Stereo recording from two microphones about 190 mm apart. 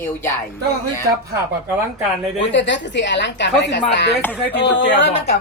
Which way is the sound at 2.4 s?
70° left (ahead or behind).